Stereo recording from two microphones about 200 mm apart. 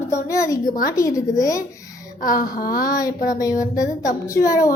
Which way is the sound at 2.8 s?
20° left (ahead or behind).